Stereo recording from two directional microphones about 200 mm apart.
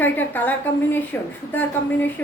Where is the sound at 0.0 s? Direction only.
10° left (ahead or behind).